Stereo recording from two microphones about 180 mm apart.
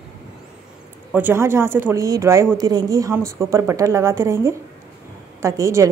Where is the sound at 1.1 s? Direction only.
10° right (ahead or behind).